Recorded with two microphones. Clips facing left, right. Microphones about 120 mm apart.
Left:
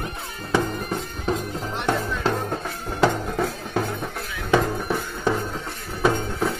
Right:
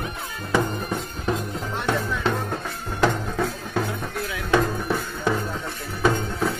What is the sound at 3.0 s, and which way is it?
Music, 15° left (ahead or behind).